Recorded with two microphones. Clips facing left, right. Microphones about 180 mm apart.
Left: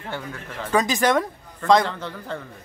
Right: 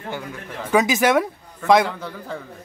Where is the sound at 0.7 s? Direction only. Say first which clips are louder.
Right 3 dB; 10° right (ahead or behind).